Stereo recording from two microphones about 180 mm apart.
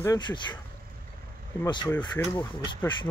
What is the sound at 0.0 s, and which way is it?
Speech, 20° left (ahead or behind).